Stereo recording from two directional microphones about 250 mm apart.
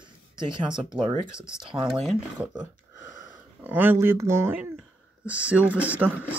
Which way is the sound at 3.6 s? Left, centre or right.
Centre.